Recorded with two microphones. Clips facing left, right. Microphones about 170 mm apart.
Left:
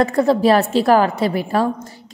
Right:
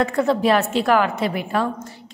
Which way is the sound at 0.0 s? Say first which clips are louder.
Left 4 dB; 35° left (ahead or behind).